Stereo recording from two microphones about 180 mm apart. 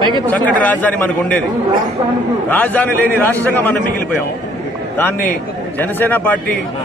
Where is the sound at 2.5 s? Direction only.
10° left (ahead or behind).